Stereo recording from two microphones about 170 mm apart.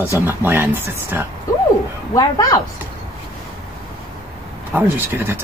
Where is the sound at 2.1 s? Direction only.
20° left (ahead or behind).